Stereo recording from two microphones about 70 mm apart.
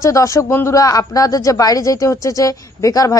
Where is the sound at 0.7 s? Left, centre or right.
Left.